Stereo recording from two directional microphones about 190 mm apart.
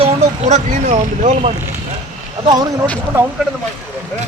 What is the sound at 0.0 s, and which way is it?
Speech, 40° right (ahead or behind).